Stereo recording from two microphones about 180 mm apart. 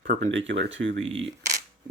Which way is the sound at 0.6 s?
90° right.